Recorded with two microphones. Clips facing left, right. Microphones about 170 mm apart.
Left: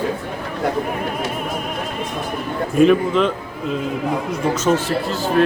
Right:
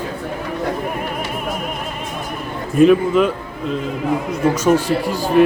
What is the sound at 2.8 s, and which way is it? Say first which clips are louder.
A man's voice: right 2 dB; 5° right (ahead or behind).